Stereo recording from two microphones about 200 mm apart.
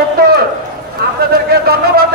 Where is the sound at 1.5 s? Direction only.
50° right (ahead or behind).